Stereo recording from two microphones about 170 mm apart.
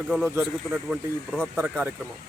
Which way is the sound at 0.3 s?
10° right (ahead or behind).